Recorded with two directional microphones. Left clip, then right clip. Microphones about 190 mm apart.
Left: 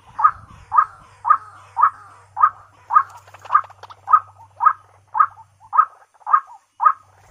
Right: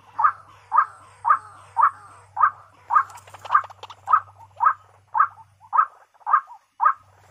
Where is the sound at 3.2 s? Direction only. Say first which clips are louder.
Right 1 dB; 35° right (ahead or behind).